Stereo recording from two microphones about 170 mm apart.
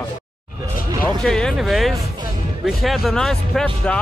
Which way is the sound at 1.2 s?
5° left (ahead or behind).